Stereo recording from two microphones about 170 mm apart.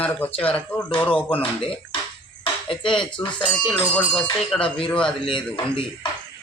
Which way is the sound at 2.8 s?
30° left (ahead or behind).